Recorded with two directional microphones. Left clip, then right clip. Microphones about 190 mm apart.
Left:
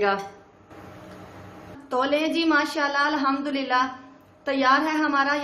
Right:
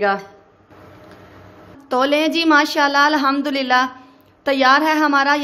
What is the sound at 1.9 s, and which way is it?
A woman's voice, 45° right (ahead or behind).